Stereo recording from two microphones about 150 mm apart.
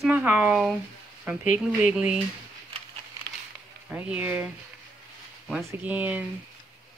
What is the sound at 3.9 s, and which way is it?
Speech, 10° right (ahead or behind).